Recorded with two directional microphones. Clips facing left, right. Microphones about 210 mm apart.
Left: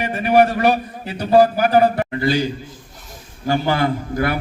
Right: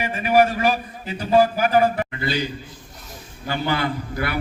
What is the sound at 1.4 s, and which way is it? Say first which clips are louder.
Speech: left 4 dB; 40° left (ahead or behind).